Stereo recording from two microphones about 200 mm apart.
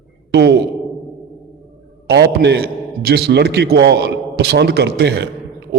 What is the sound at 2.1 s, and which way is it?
A man's voice, 55° right (ahead or behind).